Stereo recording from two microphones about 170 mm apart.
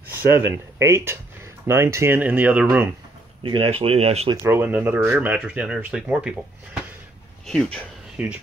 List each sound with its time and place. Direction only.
0.3 s speech: 15° right (ahead or behind)
3.4 s speech: 30° right (ahead or behind)
4.4 s speech: 10° right (ahead or behind)